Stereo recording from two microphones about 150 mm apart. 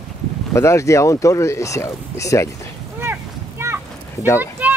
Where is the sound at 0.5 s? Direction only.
20° left (ahead or behind).